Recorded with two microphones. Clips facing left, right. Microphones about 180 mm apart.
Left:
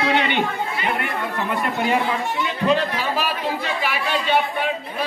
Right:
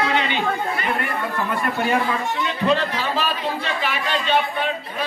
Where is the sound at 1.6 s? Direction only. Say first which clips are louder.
Even; 20° left (ahead or behind).